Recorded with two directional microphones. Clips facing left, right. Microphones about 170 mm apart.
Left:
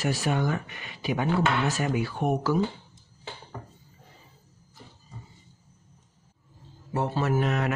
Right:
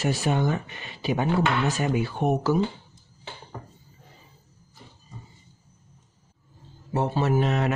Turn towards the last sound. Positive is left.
turn(degrees=-25)  # may be behind; listen again after turning